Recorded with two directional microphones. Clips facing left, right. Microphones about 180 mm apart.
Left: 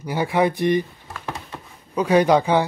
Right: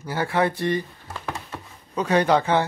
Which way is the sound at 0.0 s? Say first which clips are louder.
Left 3 dB; 15° left (ahead or behind).